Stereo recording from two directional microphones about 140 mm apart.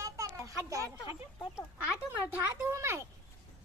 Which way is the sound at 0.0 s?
25° right (ahead or behind).